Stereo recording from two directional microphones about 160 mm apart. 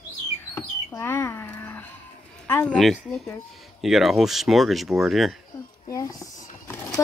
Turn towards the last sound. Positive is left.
turn(degrees=15)  # may be behind; listen again after turning